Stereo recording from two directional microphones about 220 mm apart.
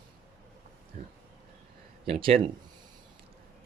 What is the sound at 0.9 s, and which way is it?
Speech, 35° right (ahead or behind).